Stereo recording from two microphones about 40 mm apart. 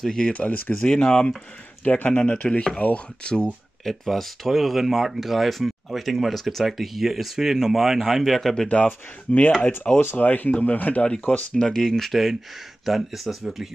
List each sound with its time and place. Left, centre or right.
0.0 s speech: centre
0.3 s speech: left
0.8 s speech: left
2.4 s speech: centre
2.8 s speech: left
3.8 s speech: centre
8.6 s speech: left
11.2 s speech: left
12.1 s speech: centre